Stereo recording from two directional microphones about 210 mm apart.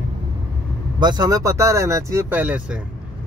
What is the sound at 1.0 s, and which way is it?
Speech, 20° right (ahead or behind).